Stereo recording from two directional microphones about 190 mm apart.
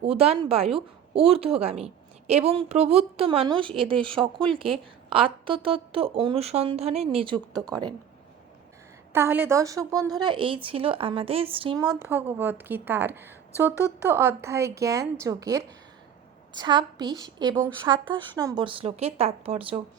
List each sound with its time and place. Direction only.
0.0 s a woman's voice: 30° right (ahead or behind)
4.2 s speech: 5° left (ahead or behind)
4.5 s a woman's voice: 30° right (ahead or behind)
9.1 s a woman's voice: 10° right (ahead or behind)
11.9 s a woman's voice: 10° right (ahead or behind); by 19.8 s 30° right (ahead or behind)